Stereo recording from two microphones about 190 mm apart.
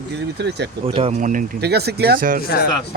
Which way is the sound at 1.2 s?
45° right (ahead or behind).